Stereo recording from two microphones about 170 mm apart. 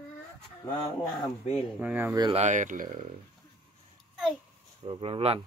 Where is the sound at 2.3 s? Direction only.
45° right (ahead or behind).